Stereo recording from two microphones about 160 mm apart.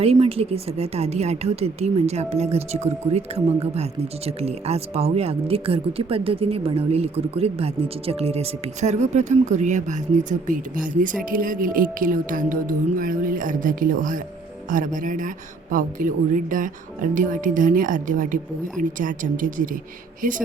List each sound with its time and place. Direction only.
0.0 s speech: 35° right (ahead or behind); by 19.6 s 55° right (ahead or behind)